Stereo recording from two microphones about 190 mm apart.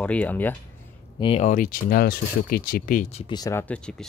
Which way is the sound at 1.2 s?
35° left (ahead or behind).